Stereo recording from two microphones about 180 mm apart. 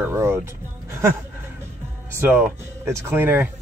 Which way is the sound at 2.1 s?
10° right (ahead or behind).